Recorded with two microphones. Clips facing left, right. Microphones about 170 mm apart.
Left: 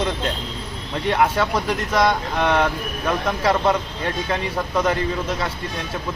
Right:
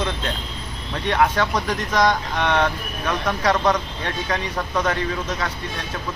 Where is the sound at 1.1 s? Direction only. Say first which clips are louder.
Even; 5° left (ahead or behind).